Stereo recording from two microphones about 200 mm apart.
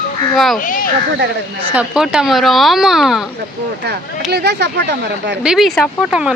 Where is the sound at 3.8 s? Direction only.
55° right (ahead or behind).